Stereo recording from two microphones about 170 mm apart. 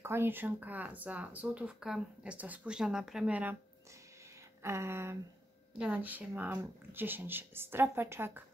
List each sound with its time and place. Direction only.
0.0 s speech: 15° right (ahead or behind)
4.6 s speech: 15° right (ahead or behind)